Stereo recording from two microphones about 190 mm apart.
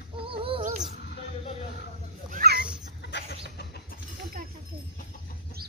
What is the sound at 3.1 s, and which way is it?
Chicken, 55° left (ahead or behind).